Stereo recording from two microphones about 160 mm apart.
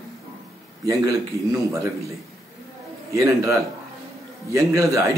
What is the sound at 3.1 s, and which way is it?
Speech, 20° right (ahead or behind).